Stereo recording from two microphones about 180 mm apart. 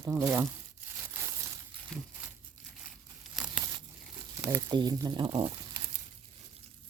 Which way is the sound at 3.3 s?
5° right (ahead or behind).